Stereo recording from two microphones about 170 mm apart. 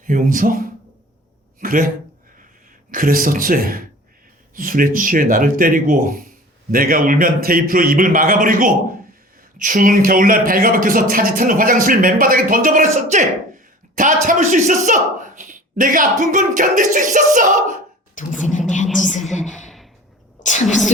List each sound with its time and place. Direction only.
0.0 s speech: 50° right (ahead or behind)
2.9 s a man's voice: 55° right (ahead or behind)
18.1 s speech: 50° left (ahead or behind)
19.3 s a sound: 45° left (ahead or behind)
19.6 s a sound: centre (ahead or behind)
20.4 s a woman's voice: 45° left (ahead or behind)